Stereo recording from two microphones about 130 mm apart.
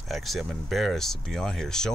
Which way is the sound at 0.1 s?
Centre (ahead or behind).